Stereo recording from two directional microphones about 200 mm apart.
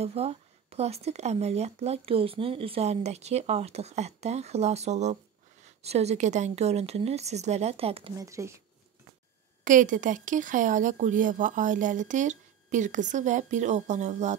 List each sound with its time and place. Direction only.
0.0 s speech: 30° right (ahead or behind)
8.2 s speech: 15° right (ahead or behind)
9.7 s speech: 40° right (ahead or behind)